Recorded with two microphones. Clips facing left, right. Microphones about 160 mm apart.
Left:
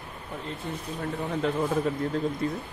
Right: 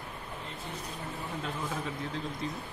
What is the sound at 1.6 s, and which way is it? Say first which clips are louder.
Speech: left 10 dB; 50° left (ahead or behind).